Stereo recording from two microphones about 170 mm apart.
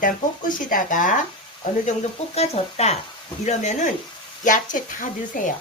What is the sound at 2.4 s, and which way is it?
Speech, 40° left (ahead or behind).